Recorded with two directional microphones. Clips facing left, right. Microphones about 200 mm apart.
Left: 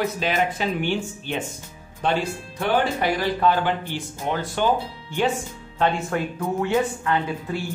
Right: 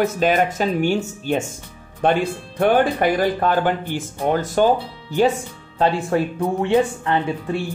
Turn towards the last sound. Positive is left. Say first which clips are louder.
# right 3 dB
turn(degrees=-30)  # may be behind; listen again after turning